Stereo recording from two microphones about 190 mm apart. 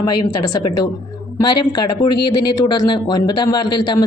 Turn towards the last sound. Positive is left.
turn(degrees=25)  # may be behind; listen again after turning